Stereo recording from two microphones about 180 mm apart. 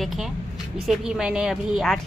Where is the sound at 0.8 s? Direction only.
5° right (ahead or behind).